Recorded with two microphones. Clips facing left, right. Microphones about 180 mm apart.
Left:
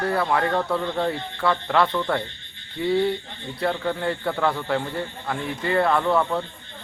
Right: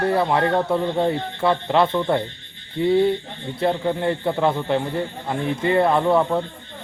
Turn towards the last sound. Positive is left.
turn(degrees=-25)  # may be behind; listen again after turning